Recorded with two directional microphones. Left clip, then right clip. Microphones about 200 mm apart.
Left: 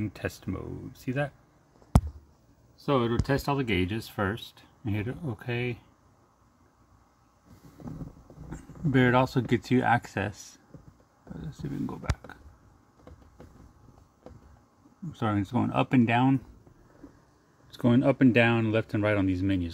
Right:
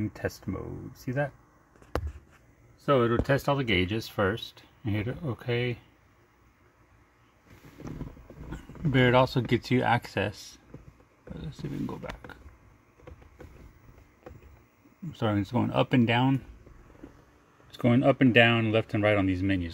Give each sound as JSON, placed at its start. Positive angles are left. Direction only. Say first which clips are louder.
{"t": 0.0, "sound": "speech", "louder": "right 1 dB", "side_deg": 10}
{"t": 2.8, "sound": "speech", "louder": "right 3 dB", "side_deg": 0}
{"t": 8.5, "sound": "speech", "louder": "left 1 dB", "side_deg": 5}
{"t": 10.3, "sound": "speech", "louder": "right 2 dB", "side_deg": 30}
{"t": 11.8, "sound": "speech", "louder": "even", "side_deg": 5}
{"t": 15.1, "sound": "speech", "louder": "even", "side_deg": 0}
{"t": 17.6, "sound": "speech", "louder": "right 1 dB", "side_deg": 5}